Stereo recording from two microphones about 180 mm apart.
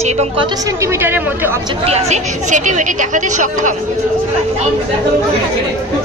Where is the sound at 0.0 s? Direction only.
35° right (ahead or behind).